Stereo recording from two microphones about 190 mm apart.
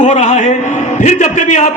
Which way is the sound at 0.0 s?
35° left (ahead or behind).